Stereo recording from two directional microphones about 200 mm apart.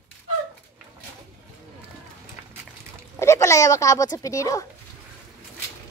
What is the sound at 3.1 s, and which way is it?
Speech, 15° left (ahead or behind).